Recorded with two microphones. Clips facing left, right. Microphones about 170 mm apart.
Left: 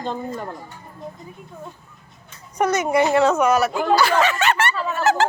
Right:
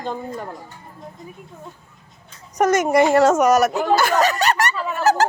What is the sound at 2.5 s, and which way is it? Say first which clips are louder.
A woman's voice: right 3 dB; 45° right (ahead or behind).